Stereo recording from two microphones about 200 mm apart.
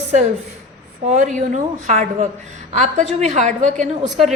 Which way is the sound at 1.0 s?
35° right (ahead or behind).